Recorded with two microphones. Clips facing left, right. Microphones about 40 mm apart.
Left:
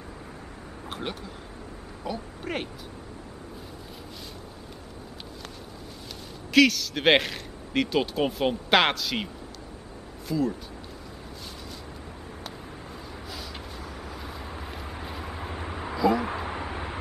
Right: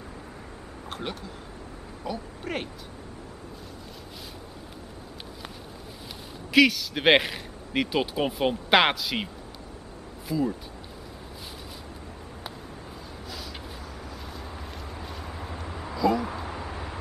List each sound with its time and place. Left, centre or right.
0.8 s a sound: centre
2.0 s speech: centre
6.5 s speech: centre
14.2 s boat: centre
14.9 s vehicle: left
15.1 s a sound: centre